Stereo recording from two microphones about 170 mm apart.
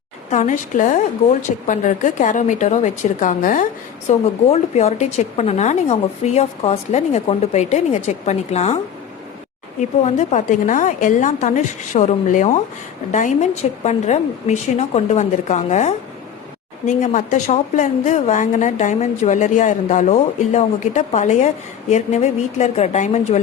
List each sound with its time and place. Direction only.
0.3 s a woman's voice: 45° left (ahead or behind)
10.0 s a woman's voice: 40° left (ahead or behind)